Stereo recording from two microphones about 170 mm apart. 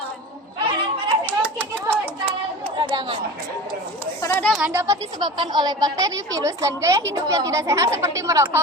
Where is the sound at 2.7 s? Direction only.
30° right (ahead or behind).